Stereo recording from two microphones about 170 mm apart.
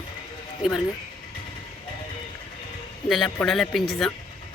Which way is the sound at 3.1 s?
Centre (ahead or behind).